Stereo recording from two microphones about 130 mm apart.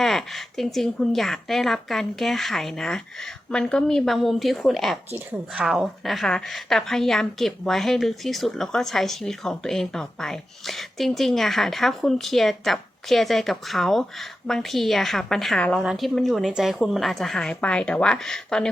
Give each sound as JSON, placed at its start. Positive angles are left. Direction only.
{"t": 0.0, "sound": "a woman's voice", "side_deg": 0}